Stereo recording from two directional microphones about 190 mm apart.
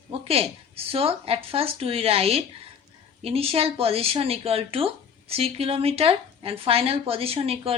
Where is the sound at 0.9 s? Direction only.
30° right (ahead or behind).